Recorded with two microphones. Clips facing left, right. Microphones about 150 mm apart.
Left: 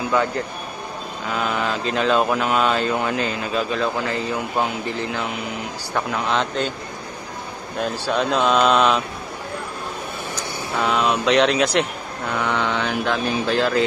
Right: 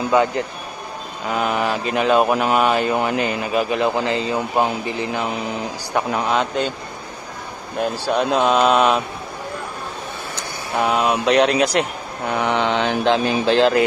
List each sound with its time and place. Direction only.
0.1 s mantra: 20° right (ahead or behind)
1.3 s speech: 15° right (ahead or behind)
7.8 s speech: 10° right (ahead or behind)
11.3 s speech: centre (ahead or behind)
12.3 s mantra: 20° right (ahead or behind)